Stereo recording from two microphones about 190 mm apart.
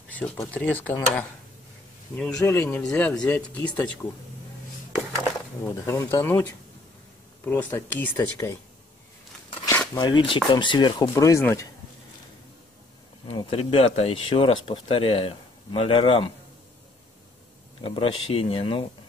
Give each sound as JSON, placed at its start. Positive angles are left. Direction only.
{"t": 0.1, "sound": "speech", "side_deg": 5}
{"t": 2.3, "sound": "speech", "side_deg": 15}
{"t": 5.7, "sound": "speech", "side_deg": 15}
{"t": 9.7, "sound": "speech", "side_deg": 20}
{"t": 13.4, "sound": "speech", "side_deg": 30}
{"t": 17.8, "sound": "speech", "side_deg": 30}